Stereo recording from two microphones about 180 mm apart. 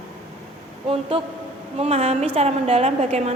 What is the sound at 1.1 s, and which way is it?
A woman's voice, 30° right (ahead or behind).